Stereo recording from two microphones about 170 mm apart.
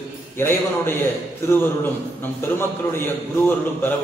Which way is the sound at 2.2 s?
15° left (ahead or behind).